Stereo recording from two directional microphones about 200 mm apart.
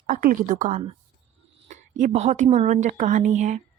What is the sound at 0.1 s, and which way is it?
Speech, 45° right (ahead or behind).